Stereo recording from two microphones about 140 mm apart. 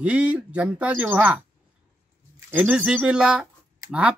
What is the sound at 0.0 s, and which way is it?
Speech, 10° right (ahead or behind).